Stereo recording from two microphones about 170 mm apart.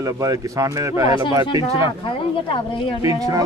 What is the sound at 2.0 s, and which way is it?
Speech, 30° left (ahead or behind).